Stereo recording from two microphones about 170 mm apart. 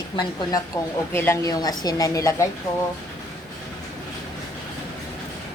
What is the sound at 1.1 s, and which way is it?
A woman's voice, 15° left (ahead or behind).